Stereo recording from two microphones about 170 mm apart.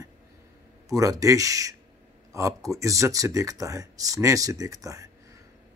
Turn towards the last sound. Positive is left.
turn(degrees=-20)  # may be behind; listen again after turning